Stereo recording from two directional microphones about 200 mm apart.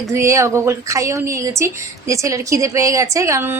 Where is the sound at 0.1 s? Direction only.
15° right (ahead or behind).